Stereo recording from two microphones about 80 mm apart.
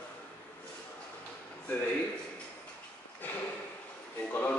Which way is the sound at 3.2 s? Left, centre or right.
Left.